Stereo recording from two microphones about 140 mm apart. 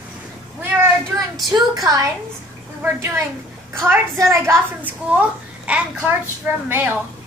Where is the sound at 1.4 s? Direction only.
25° right (ahead or behind).